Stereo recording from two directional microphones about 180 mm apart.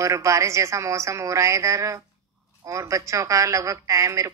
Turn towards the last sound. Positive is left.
turn(degrees=-15)  # may be behind; listen again after turning